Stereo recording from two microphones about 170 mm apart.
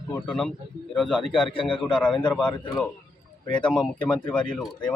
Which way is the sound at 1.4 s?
30° left (ahead or behind).